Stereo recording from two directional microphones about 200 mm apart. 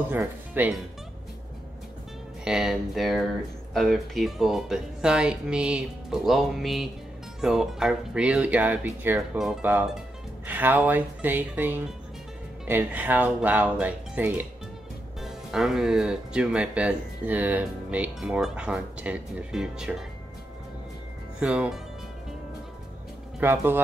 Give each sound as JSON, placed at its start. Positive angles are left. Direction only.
{"t": 0.1, "sound": "speech", "side_deg": -10}
{"t": 2.4, "sound": "speech", "side_deg": 0}
{"t": 21.4, "sound": "speech", "side_deg": -5}
{"t": 23.4, "sound": "speech", "side_deg": -10}